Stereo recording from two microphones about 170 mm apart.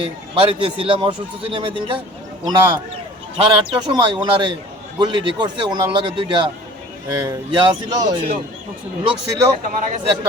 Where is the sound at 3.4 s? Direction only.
25° right (ahead or behind).